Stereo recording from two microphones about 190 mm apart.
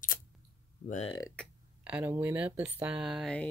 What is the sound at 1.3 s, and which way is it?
Speech, 5° right (ahead or behind).